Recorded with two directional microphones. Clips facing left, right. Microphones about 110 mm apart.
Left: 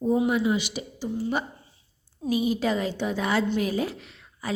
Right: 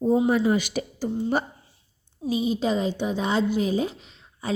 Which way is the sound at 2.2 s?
25° right (ahead or behind).